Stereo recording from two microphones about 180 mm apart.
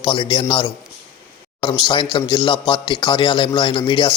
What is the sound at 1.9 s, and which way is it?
A man's voice, 25° left (ahead or behind).